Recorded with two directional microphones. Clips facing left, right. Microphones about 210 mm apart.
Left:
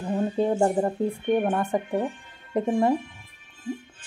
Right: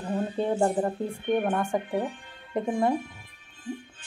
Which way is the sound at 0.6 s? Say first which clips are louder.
Left 3 dB; 10° left (ahead or behind).